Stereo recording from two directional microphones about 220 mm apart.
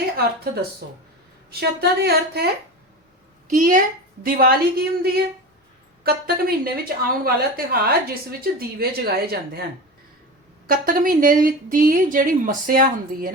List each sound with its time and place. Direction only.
1.5 s a woman's voice: 45° right (ahead or behind)
3.5 s a woman's voice: 40° right (ahead or behind)
10.7 s speech: 40° right (ahead or behind)